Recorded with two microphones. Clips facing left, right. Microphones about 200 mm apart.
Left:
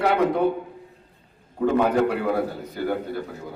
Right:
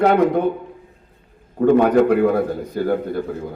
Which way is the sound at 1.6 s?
60° right (ahead or behind).